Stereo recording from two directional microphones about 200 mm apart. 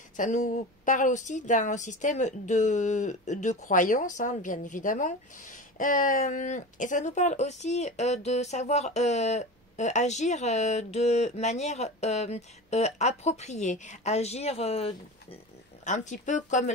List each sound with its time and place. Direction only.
0.2 s speech: 40° left (ahead or behind)